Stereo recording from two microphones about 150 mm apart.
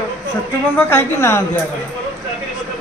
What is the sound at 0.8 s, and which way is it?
Speech, 15° left (ahead or behind).